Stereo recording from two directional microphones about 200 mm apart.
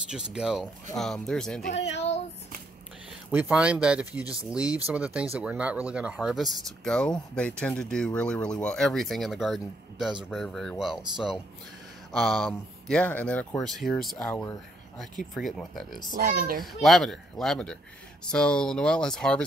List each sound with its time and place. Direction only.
0.1 s speech: 5° right (ahead or behind)
1.7 s a child's voice: 35° left (ahead or behind)
3.3 s speech: 10° right (ahead or behind)
14.1 s speech: 10° left (ahead or behind)
15.3 s speech: centre (ahead or behind)
16.2 s a child's voice: 45° right (ahead or behind)
16.6 s speech: centre (ahead or behind)